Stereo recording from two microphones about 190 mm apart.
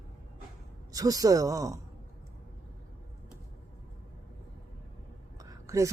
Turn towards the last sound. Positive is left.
turn(degrees=-15)  # may be behind; listen again after turning